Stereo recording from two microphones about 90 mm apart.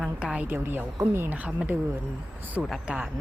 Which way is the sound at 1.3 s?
15° right (ahead or behind).